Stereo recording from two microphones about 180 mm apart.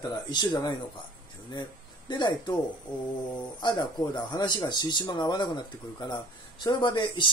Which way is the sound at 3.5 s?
25° left (ahead or behind).